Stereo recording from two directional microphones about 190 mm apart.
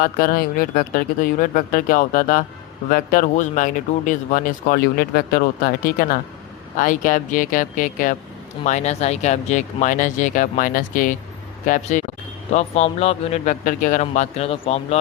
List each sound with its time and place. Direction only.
0.0 s speech: 50° left (ahead or behind); by 14.9 s 30° left (ahead or behind)